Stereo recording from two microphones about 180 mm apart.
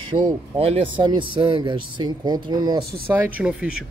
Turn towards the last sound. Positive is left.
turn(degrees=-5)  # may be behind; listen again after turning